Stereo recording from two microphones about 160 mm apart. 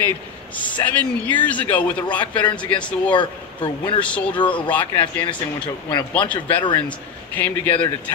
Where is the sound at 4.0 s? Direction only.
10° left (ahead or behind).